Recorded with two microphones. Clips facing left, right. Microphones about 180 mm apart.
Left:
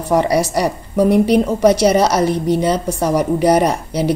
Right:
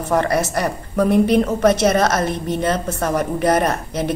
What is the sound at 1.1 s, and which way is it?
Speech, 75° left (ahead or behind).